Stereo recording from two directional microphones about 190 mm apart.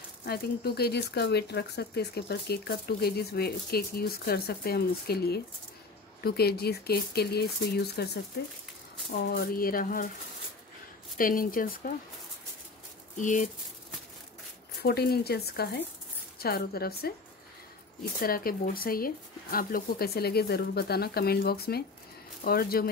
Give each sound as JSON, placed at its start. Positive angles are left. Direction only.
{"t": 0.2, "sound": "speech", "side_deg": 55}
{"t": 9.2, "sound": "speech", "side_deg": 50}
{"t": 11.1, "sound": "speech", "side_deg": 50}
{"t": 13.2, "sound": "speech", "side_deg": 40}
{"t": 14.8, "sound": "speech", "side_deg": 55}
{"t": 18.2, "sound": "speech", "side_deg": 50}